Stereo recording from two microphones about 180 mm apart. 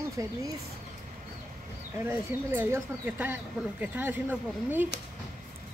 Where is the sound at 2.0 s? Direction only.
10° right (ahead or behind).